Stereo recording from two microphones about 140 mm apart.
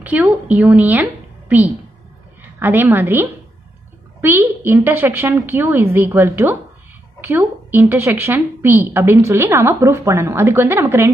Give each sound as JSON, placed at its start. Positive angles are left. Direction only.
{"t": 0.0, "sound": "a woman's voice", "side_deg": -10}
{"t": 2.6, "sound": "a woman's voice", "side_deg": -15}